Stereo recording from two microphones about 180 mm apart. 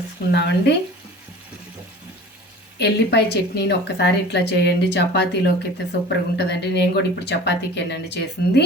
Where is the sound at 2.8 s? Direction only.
70° left (ahead or behind).